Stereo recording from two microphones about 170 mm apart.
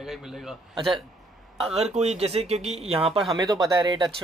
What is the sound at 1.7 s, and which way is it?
Speech, 40° right (ahead or behind).